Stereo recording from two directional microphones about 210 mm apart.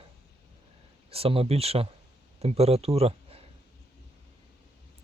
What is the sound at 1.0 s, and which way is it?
Speech, 25° right (ahead or behind).